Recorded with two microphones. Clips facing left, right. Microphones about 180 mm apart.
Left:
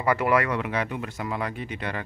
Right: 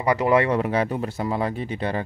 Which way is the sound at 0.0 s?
20° right (ahead or behind).